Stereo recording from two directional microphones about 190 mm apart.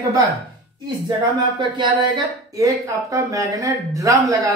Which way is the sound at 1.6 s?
25° right (ahead or behind).